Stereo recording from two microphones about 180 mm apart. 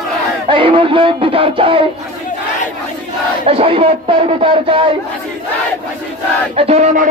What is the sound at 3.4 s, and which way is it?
Speech, 30° right (ahead or behind).